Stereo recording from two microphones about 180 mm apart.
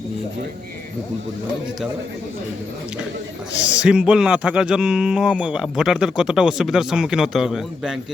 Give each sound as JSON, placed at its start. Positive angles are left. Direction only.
{"t": 3.8, "sound": "speech", "side_deg": -5}